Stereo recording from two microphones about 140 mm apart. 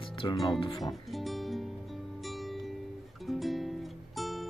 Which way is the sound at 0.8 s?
Centre (ahead or behind).